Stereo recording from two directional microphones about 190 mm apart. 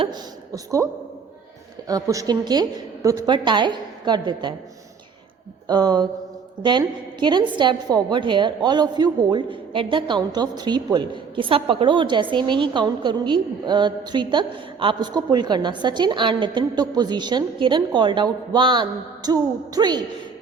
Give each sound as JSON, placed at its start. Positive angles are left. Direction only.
{"t": 0.0, "sound": "a woman's voice", "side_deg": -20}
{"t": 1.9, "sound": "a woman's voice", "side_deg": -20}
{"t": 5.6, "sound": "a woman's voice", "side_deg": -20}